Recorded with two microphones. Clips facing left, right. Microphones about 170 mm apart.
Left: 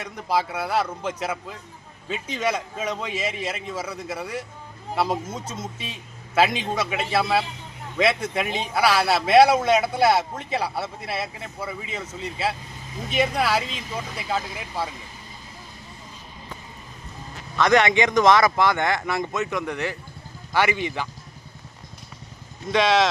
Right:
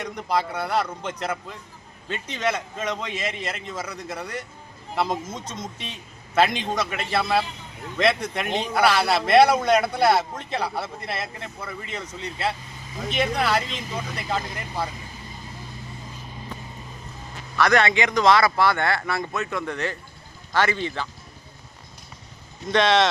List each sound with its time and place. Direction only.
0.0 s a man's voice: 5° left (ahead or behind)
17.6 s a man's voice: 20° left (ahead or behind)
22.7 s speech: 5° left (ahead or behind)